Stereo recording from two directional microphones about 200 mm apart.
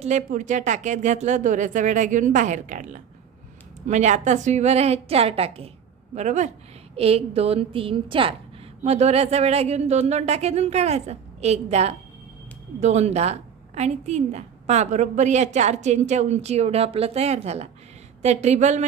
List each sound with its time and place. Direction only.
0.0 s a woman's voice: 40° right (ahead or behind)